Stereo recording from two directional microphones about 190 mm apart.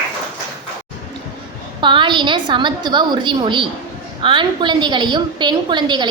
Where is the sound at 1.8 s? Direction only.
25° right (ahead or behind).